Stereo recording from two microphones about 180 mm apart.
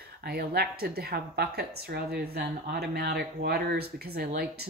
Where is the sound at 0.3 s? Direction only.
60° right (ahead or behind).